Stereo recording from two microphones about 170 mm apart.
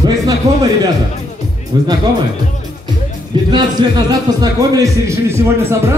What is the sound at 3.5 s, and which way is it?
A man's voice, 25° right (ahead or behind).